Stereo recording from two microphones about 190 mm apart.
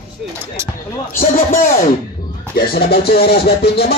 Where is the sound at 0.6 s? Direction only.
15° right (ahead or behind).